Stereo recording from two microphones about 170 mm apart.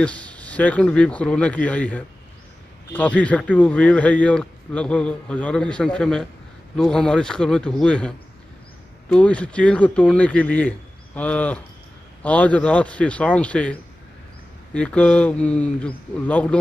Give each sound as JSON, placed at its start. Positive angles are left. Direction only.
{"t": 0.0, "sound": "a man's voice", "side_deg": 5}
{"t": 9.1, "sound": "a man's voice", "side_deg": 5}